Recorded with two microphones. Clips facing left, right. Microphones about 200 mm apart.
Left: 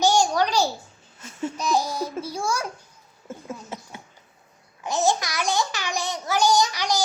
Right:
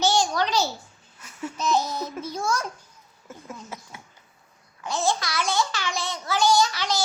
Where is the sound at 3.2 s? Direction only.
25° left (ahead or behind).